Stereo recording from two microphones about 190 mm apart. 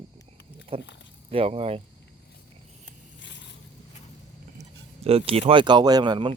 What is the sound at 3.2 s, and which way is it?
Scrape, 70° left (ahead or behind).